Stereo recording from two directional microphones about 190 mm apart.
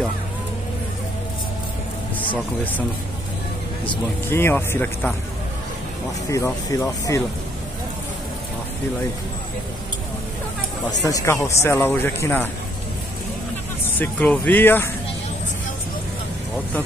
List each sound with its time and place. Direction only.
4.3 s speech: 10° left (ahead or behind)
6.3 s speech: 15° left (ahead or behind)
10.9 s speech: 20° left (ahead or behind)
13.9 s speech: 10° left (ahead or behind)